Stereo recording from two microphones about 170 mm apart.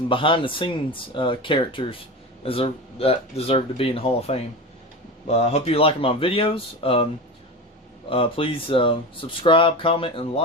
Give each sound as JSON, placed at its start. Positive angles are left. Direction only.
{"t": 0.1, "sound": "speech", "side_deg": 30}
{"t": 8.1, "sound": "speech", "side_deg": 30}